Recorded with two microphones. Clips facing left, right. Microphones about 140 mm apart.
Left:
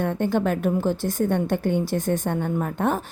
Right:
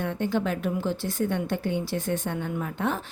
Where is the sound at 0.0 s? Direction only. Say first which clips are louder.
Left 4 dB; 50° left (ahead or behind).